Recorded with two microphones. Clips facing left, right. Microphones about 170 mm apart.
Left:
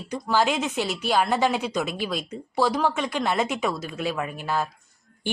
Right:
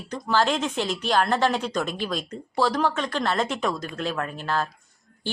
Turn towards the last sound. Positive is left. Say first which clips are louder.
# even
turn(degrees=10)  # may be behind; listen again after turning